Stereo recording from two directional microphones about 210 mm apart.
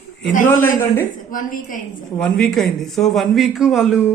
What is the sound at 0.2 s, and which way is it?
A man's voice, 40° left (ahead or behind).